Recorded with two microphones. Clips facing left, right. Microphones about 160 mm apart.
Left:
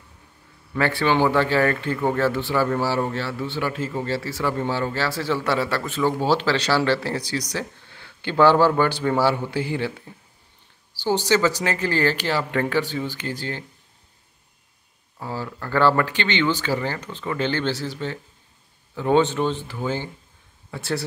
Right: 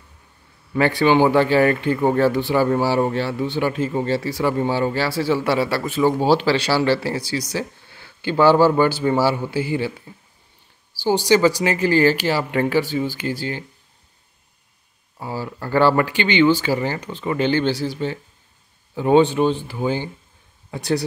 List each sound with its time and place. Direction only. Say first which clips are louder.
0.7 s speech: right 5 dB; 15° right (ahead or behind)
11.0 s speech: right 4 dB; 10° right (ahead or behind)
15.1 s speech: right 2 dB; 15° right (ahead or behind)